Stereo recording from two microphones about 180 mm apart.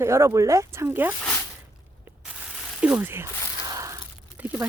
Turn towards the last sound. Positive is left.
turn(degrees=-10)  # may be behind; listen again after turning